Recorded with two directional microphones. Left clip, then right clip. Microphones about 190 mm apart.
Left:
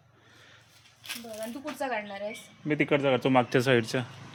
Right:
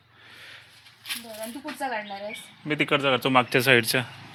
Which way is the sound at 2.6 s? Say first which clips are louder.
Right 2 dB; 20° left (ahead or behind).